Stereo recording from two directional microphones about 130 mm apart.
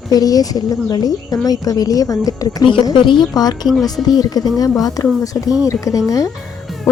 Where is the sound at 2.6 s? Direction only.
40° left (ahead or behind).